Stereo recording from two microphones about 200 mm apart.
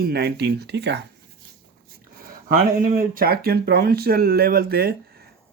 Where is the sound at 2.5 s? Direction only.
45° right (ahead or behind).